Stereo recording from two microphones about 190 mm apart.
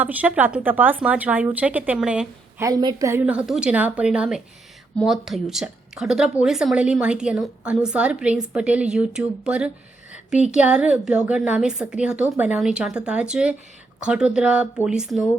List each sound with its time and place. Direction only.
0.0 s speech: 10° right (ahead or behind)
2.6 s a woman's voice: 20° right (ahead or behind); by 15.3 s centre (ahead or behind)